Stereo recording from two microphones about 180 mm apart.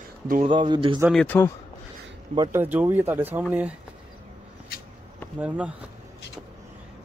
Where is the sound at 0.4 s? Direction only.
25° right (ahead or behind).